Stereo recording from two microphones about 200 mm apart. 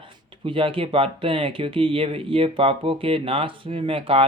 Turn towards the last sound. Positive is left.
turn(degrees=-30)  # may be behind; listen again after turning